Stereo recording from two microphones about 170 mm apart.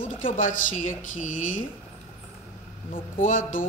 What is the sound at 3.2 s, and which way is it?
Speech, 50° left (ahead or behind).